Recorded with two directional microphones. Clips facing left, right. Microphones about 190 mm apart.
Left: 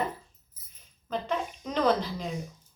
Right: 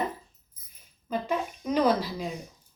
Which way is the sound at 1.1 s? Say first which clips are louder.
Right 2 dB; 10° right (ahead or behind).